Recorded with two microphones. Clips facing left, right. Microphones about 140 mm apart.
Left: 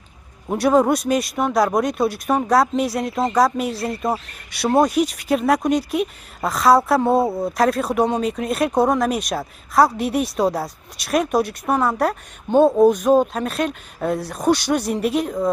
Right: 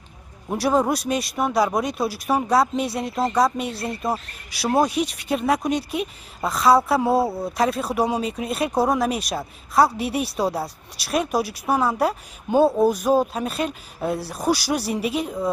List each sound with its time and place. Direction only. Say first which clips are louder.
0.5 s speech: left 4 dB; centre (ahead or behind)
7.2 s speech: left 4 dB; 20° left (ahead or behind)
7.5 s speech: left 3 dB; centre (ahead or behind)